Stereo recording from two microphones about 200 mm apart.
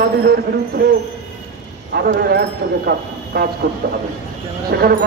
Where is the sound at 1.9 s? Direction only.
50° right (ahead or behind).